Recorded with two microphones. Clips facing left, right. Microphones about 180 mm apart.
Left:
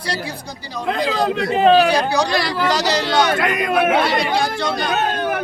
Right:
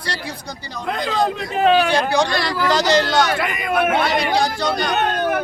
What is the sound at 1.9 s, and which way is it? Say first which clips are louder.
Speech: even; 35° left (ahead or behind).